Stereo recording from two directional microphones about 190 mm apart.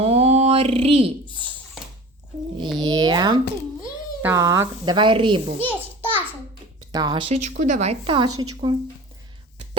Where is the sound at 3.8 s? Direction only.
15° right (ahead or behind).